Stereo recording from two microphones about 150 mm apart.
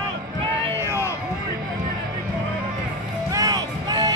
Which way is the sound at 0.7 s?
15° right (ahead or behind).